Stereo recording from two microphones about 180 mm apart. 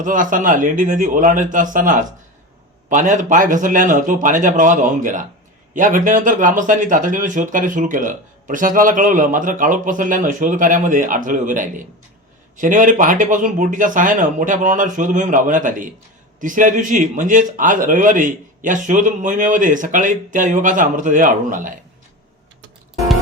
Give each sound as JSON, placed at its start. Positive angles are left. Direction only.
{"t": 0.0, "sound": "speech", "side_deg": -45}